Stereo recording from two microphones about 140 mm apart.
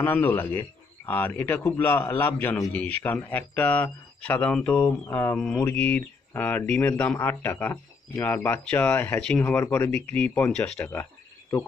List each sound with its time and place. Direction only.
0.0 s speech: 15° left (ahead or behind)